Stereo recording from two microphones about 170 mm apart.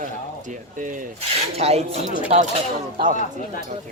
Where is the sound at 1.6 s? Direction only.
40° right (ahead or behind).